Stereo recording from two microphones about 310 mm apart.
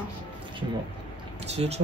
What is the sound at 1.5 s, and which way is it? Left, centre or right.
Speech, centre.